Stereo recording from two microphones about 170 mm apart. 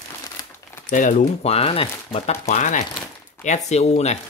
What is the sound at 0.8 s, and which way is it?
Speech, 50° left (ahead or behind).